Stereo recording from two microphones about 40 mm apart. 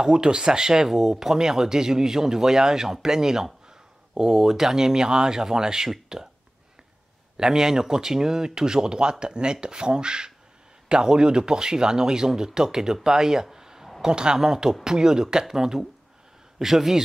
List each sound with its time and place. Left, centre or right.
0.0 s speech: right
7.3 s speech: centre